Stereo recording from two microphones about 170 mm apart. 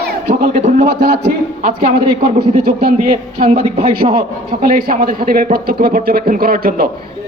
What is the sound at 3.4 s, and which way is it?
Speech, 40° right (ahead or behind).